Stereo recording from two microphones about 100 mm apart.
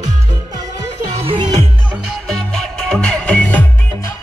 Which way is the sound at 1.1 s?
65° right (ahead or behind).